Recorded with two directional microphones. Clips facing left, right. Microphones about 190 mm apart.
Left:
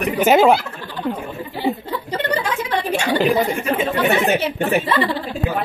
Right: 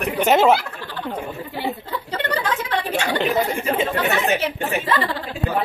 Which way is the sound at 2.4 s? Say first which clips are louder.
Left 2 dB; 10° left (ahead or behind).